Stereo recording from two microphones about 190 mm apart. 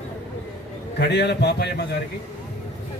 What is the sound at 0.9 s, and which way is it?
Speech, 60° left (ahead or behind).